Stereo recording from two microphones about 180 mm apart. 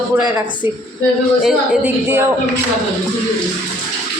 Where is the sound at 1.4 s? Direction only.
5° right (ahead or behind).